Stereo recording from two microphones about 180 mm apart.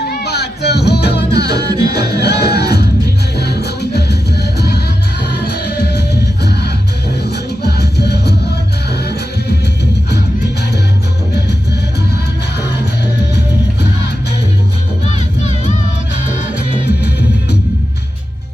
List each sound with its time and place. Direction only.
0.0 s music: 60° left (ahead or behind)